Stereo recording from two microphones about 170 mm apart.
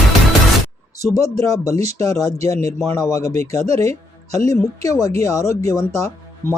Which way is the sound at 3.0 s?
20° left (ahead or behind).